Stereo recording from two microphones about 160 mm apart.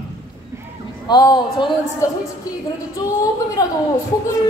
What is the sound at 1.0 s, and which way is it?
A man's voice, 25° left (ahead or behind).